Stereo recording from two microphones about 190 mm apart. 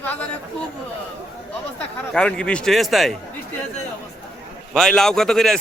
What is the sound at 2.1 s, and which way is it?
Speech, 5° left (ahead or behind).